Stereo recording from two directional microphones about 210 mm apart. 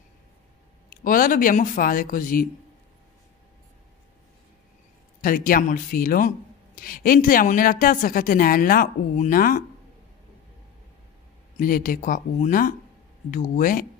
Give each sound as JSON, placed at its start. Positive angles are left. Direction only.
{"t": 0.8, "sound": "speech", "side_deg": 40}
{"t": 5.2, "sound": "speech", "side_deg": 40}
{"t": 11.6, "sound": "speech", "side_deg": 40}